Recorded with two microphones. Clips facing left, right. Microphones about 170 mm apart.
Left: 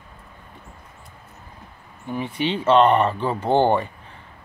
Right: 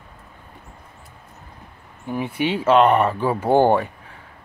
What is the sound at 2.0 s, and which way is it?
Speech, 10° right (ahead or behind).